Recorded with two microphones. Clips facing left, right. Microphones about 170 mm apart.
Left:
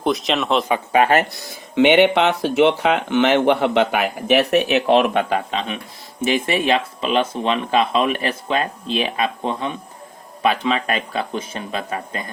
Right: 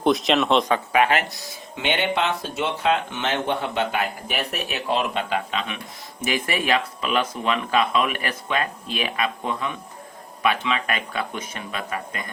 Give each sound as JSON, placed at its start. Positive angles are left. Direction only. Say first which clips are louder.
{"t": 0.0, "sound": "speech", "louder": "right 1 dB", "side_deg": 0}
{"t": 0.9, "sound": "speech", "louder": "left 5 dB", "side_deg": 35}
{"t": 1.3, "sound": "speech", "louder": "left 4 dB", "side_deg": 65}
{"t": 5.3, "sound": "speech", "louder": "left 4 dB", "side_deg": 35}